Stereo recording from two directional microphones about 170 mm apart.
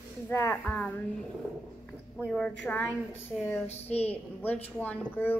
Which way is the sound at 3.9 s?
40° left (ahead or behind).